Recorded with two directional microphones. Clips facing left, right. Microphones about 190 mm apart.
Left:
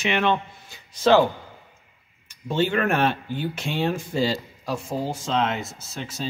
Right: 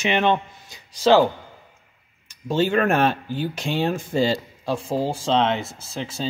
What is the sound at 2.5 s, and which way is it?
Speech, 40° right (ahead or behind).